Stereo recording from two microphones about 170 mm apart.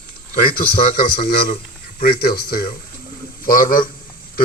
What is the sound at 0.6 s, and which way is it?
A man's voice, 60° left (ahead or behind).